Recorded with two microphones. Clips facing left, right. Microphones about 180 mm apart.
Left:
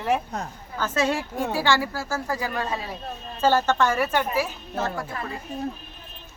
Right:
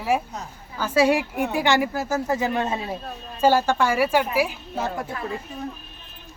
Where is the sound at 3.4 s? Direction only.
10° right (ahead or behind).